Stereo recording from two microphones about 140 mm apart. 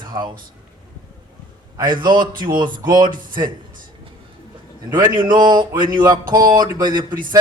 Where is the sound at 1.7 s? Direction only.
30° right (ahead or behind).